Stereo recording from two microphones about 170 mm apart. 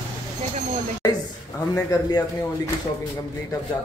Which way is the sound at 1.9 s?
20° left (ahead or behind).